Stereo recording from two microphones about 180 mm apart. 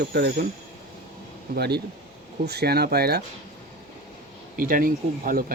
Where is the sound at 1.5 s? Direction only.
65° right (ahead or behind).